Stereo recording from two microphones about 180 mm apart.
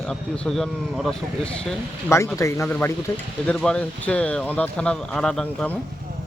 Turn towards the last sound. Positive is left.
turn(degrees=5)  # may be behind; listen again after turning